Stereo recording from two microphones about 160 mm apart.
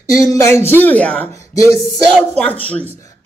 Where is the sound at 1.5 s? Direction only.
20° left (ahead or behind).